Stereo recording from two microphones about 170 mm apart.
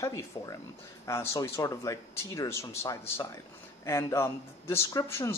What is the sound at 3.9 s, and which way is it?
Speech, 15° left (ahead or behind).